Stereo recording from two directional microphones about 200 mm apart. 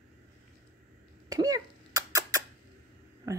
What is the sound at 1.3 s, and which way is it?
Cough, 20° right (ahead or behind).